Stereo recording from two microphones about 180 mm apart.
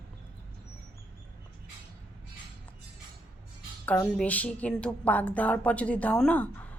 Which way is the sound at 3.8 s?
10° left (ahead or behind).